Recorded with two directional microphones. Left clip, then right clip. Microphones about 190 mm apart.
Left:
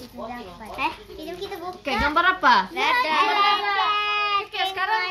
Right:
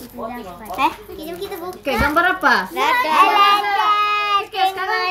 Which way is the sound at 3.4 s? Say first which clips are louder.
Right 6 dB; 35° right (ahead or behind).